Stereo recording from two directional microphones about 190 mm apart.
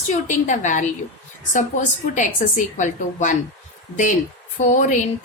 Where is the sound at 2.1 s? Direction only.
40° left (ahead or behind).